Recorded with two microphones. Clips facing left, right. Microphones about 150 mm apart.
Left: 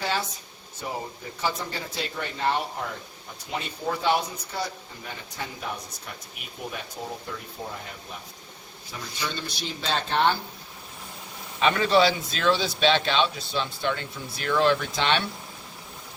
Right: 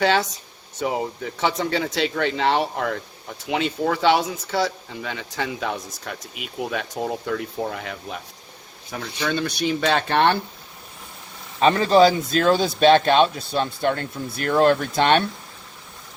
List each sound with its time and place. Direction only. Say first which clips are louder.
0.0 s speech: right 9 dB; 85° right
8.9 s speech: right 8 dB; 65° right (ahead or behind)
11.6 s speech: right 5 dB; 35° right (ahead or behind)